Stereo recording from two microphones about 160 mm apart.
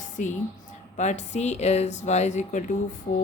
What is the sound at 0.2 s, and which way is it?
Speech, 50° left (ahead or behind).